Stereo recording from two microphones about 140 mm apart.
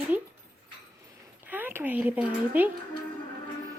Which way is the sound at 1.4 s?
15° right (ahead or behind).